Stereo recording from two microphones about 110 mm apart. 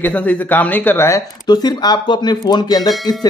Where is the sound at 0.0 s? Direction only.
15° left (ahead or behind).